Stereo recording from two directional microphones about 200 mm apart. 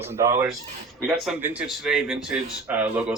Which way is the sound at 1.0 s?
5° right (ahead or behind).